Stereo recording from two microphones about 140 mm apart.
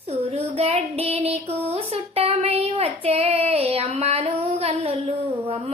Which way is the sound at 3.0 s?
45° right (ahead or behind).